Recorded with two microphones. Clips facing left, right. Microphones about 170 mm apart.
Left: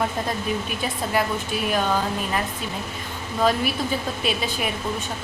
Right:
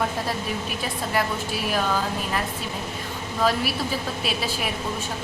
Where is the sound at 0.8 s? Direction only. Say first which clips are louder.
Even; centre (ahead or behind).